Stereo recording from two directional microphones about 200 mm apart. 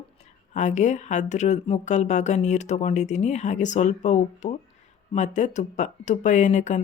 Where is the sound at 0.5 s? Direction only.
35° left (ahead or behind).